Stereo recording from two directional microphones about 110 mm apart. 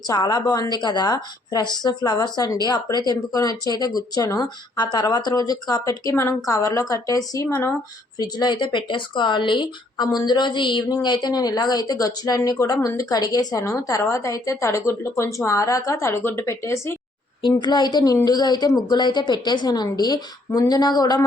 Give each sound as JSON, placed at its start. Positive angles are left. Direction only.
{"t": 0.1, "sound": "a woman's voice", "side_deg": 40}
{"t": 17.4, "sound": "a woman's voice", "side_deg": 40}